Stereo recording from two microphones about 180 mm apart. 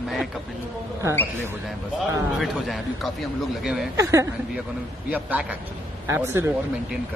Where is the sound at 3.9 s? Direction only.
15° right (ahead or behind).